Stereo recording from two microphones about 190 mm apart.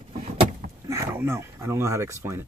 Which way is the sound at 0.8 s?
15° right (ahead or behind).